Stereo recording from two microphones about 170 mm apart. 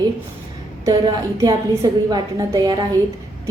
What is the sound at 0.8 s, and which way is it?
A woman's voice, 20° right (ahead or behind).